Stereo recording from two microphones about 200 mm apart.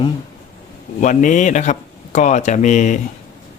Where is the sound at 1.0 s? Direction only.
40° left (ahead or behind).